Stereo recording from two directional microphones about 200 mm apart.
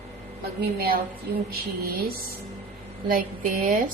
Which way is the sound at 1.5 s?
50° right (ahead or behind).